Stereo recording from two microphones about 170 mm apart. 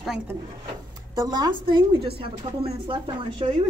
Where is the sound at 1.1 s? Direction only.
25° right (ahead or behind).